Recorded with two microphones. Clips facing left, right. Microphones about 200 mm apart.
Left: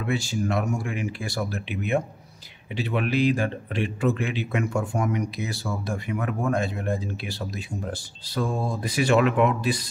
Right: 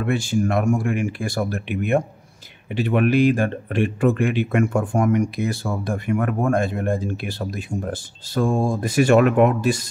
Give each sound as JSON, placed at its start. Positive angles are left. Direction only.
{"t": 0.0, "sound": "speech", "side_deg": -55}